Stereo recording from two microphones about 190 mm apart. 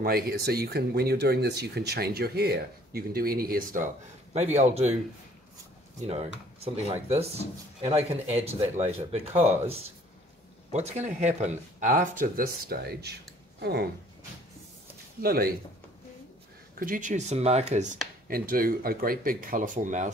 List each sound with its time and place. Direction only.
0.0 s speech: 55° right (ahead or behind); by 4.9 s 35° right (ahead or behind)
6.0 s speech: 30° right (ahead or behind); by 13.8 s 60° right (ahead or behind)
15.2 s speech: 50° right (ahead or behind)
16.7 s speech: 45° right (ahead or behind)
18.3 s speech: 50° right (ahead or behind)